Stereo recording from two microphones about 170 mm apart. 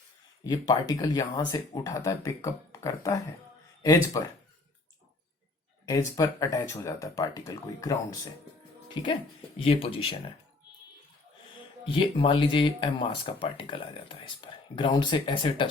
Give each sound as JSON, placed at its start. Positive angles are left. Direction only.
{"t": 0.4, "sound": "speech", "side_deg": 25}
{"t": 5.8, "sound": "speech", "side_deg": 20}
{"t": 11.9, "sound": "speech", "side_deg": 30}